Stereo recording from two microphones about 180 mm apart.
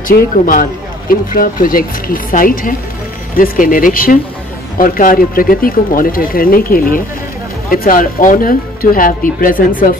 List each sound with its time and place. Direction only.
0.1 s speech: 50° left (ahead or behind)